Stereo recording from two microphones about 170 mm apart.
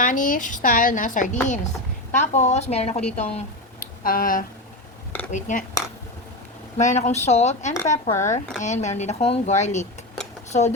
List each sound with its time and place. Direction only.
0.0 s speech: 50° left (ahead or behind)
4.0 s speech: 55° left (ahead or behind)
5.3 s speech: 45° left (ahead or behind)
6.7 s speech: 45° left (ahead or behind)